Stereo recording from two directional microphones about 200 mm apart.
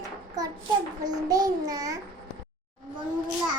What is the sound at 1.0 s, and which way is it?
Speech, 20° right (ahead or behind).